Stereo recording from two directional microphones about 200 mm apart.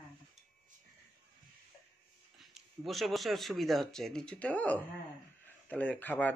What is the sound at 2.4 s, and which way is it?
Speech, centre (ahead or behind).